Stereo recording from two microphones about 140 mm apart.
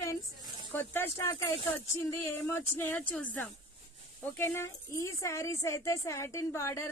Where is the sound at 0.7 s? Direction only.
15° left (ahead or behind).